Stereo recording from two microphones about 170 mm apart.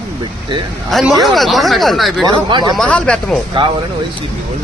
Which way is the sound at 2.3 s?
25° right (ahead or behind).